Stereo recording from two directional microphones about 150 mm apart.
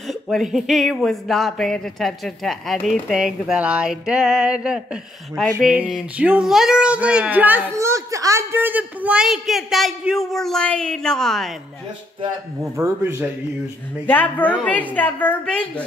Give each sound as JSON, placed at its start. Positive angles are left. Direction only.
{"t": 0.1, "sound": "speech", "side_deg": 0}
{"t": 12.7, "sound": "speech", "side_deg": -15}
{"t": 14.0, "sound": "a woman's voice", "side_deg": 10}